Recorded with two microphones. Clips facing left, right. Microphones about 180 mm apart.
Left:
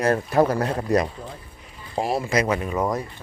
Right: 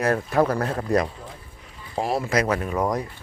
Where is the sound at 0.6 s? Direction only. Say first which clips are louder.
Left 1 dB; 20° left (ahead or behind).